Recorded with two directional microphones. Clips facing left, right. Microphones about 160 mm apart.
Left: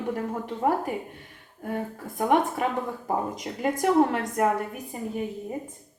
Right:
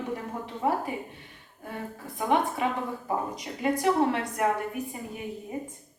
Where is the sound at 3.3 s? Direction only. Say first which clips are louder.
Even; 45° left (ahead or behind).